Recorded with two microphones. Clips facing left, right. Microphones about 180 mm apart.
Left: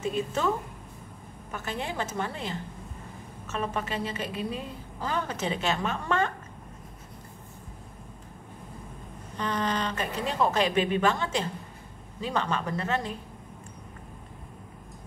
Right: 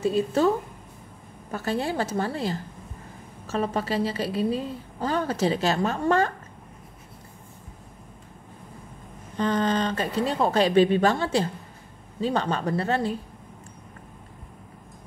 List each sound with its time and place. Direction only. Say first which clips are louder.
0.0 s a woman's voice: right 7 dB; 35° right (ahead or behind)
1.5 s a woman's voice: right 7 dB; 35° right (ahead or behind)
9.4 s a woman's voice: right 6 dB; 30° right (ahead or behind)